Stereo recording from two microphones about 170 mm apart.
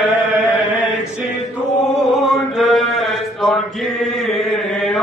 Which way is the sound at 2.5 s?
Centre (ahead or behind).